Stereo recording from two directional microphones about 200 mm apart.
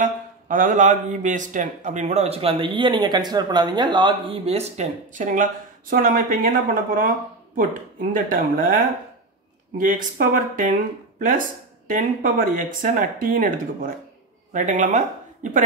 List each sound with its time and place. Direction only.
0.0 s a man's voice: 40° right (ahead or behind)